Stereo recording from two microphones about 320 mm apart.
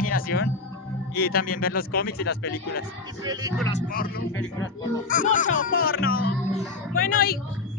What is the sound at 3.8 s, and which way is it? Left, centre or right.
Speech, left.